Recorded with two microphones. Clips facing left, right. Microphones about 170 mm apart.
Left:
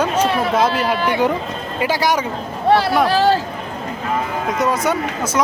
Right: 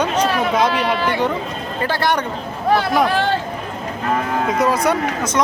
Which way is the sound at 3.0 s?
35° left (ahead or behind).